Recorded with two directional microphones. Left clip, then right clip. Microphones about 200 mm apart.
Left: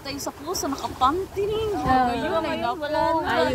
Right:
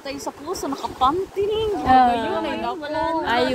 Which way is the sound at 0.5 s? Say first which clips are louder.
Right 1 dB; centre (ahead or behind).